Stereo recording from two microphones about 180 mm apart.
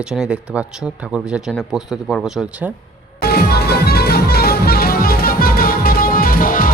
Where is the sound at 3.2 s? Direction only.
60° left (ahead or behind).